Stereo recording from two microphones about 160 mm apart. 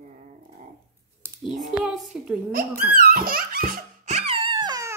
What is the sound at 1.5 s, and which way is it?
Speech, 5° right (ahead or behind).